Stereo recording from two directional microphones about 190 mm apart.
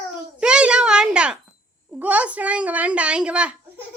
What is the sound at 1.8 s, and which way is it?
A child's voice, 10° right (ahead or behind).